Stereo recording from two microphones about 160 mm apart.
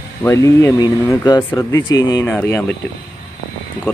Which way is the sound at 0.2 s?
20° left (ahead or behind).